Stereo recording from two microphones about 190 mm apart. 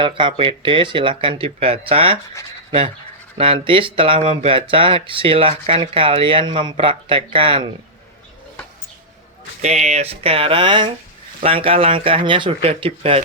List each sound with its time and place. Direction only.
0.0 s speech: 25° right (ahead or behind)
3.3 s speech: 30° right (ahead or behind)
9.6 s speech: 35° right (ahead or behind)